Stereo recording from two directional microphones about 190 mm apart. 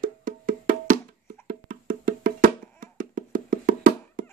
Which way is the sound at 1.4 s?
45° right (ahead or behind).